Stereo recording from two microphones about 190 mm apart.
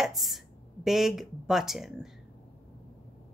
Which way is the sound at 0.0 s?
Centre (ahead or behind).